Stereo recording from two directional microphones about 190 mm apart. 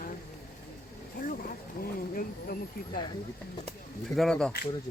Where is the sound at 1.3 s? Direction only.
50° left (ahead or behind).